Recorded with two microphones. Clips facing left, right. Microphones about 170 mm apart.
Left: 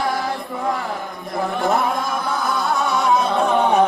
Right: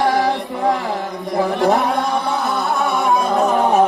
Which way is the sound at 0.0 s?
80° right.